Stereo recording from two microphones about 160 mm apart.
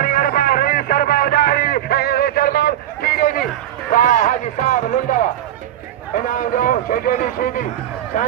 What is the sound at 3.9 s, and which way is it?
A man's voice, 55° left (ahead or behind).